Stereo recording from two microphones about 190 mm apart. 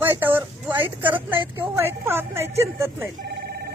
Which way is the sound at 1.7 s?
10° right (ahead or behind).